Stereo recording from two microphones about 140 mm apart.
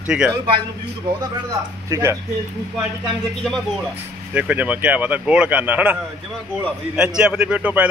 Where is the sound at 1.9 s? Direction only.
20° right (ahead or behind).